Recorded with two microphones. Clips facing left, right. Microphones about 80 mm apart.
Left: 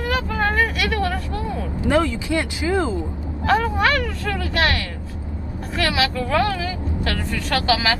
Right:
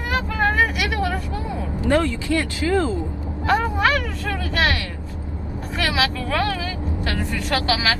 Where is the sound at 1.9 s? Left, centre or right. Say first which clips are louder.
Even; centre.